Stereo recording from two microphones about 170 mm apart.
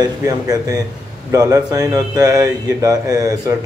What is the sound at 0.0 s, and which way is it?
A man's voice, 20° right (ahead or behind).